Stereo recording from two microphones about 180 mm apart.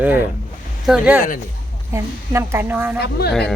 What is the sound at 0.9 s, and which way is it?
A woman's voice, 5° right (ahead or behind).